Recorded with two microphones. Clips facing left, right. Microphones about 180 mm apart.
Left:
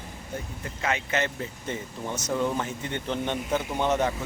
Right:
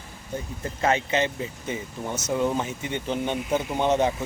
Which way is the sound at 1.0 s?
20° right (ahead or behind).